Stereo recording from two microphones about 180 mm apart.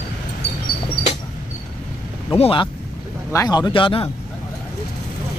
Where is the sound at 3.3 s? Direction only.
20° left (ahead or behind).